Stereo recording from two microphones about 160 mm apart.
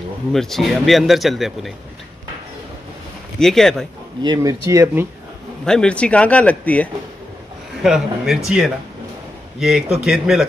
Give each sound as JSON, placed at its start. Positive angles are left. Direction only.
{"t": 0.3, "sound": "speech", "side_deg": 0}
{"t": 3.3, "sound": "speech", "side_deg": 0}
{"t": 4.2, "sound": "speech", "side_deg": -25}
{"t": 5.7, "sound": "speech", "side_deg": 5}
{"t": 7.8, "sound": "speech", "side_deg": 0}